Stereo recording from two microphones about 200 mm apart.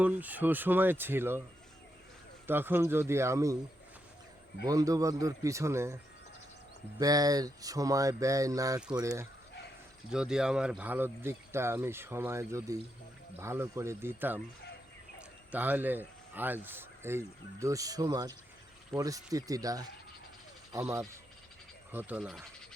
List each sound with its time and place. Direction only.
0.0 s speech: 10° right (ahead or behind)
2.5 s speech: 10° right (ahead or behind)
4.6 s speech: 15° right (ahead or behind)
7.0 s speech: 20° right (ahead or behind)
10.1 s speech: 5° right (ahead or behind)
15.5 s speech: 10° right (ahead or behind)